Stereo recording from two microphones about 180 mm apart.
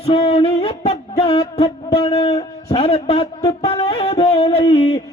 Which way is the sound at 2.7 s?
35° left (ahead or behind).